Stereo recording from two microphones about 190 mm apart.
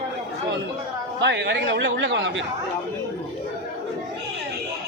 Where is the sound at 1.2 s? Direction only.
65° right (ahead or behind).